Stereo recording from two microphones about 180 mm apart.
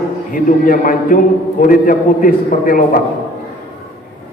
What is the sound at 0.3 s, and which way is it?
A man's voice, 50° left (ahead or behind).